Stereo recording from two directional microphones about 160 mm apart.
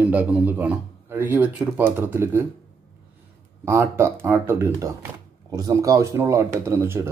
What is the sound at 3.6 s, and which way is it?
A man's voice, 15° right (ahead or behind).